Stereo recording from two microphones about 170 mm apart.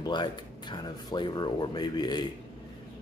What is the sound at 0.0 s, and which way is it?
Speech, 25° left (ahead or behind).